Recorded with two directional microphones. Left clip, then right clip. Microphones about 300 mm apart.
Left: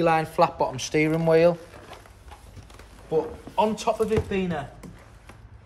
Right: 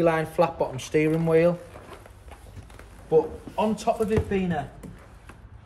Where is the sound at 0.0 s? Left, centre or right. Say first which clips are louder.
Left 1 dB; left.